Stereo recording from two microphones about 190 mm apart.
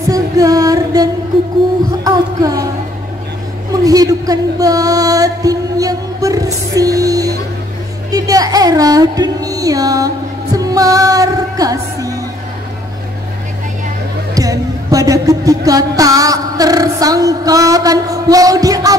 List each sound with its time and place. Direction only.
0.1 s music: 20° right (ahead or behind)
2.0 s a sound: 20° right (ahead or behind)
3.7 s music: 20° right (ahead or behind)
14.3 s music: 20° right (ahead or behind)